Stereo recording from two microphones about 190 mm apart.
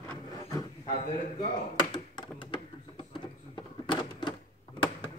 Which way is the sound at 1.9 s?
25° left (ahead or behind).